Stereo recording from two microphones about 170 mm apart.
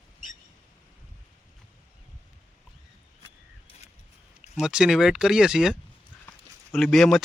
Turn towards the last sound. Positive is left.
turn(degrees=0)  # may be behind; listen again after turning